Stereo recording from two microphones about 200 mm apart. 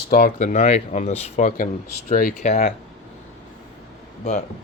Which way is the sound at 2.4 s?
35° left (ahead or behind).